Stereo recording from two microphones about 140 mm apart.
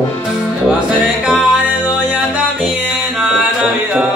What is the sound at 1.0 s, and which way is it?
Music, 5° right (ahead or behind).